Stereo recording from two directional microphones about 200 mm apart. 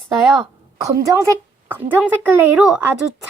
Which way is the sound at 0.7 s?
15° right (ahead or behind).